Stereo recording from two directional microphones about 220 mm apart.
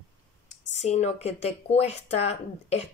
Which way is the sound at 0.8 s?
30° left (ahead or behind).